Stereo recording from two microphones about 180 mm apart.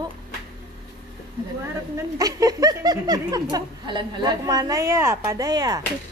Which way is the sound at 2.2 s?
20° right (ahead or behind).